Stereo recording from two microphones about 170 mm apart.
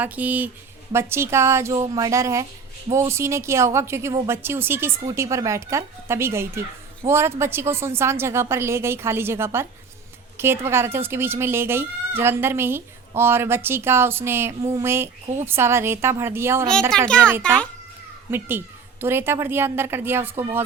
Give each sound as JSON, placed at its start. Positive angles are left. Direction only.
{"t": 0.0, "sound": "speech", "side_deg": -10}